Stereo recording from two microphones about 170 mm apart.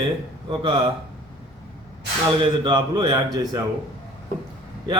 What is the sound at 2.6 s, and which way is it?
Speech, 25° right (ahead or behind).